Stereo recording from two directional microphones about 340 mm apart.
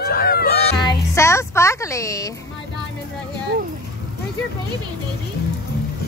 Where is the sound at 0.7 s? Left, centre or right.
Centre.